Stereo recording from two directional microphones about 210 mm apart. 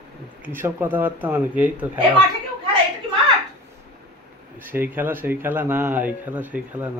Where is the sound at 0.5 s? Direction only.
10° right (ahead or behind).